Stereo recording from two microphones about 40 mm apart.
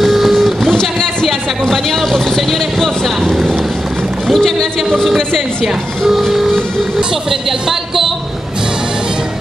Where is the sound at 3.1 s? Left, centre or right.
Centre.